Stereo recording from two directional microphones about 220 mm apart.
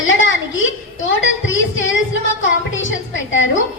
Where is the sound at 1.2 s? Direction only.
60° left (ahead or behind).